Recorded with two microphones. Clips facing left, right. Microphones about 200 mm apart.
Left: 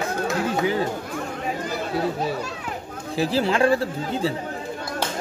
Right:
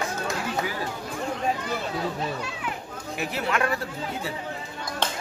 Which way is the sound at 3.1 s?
30° left (ahead or behind).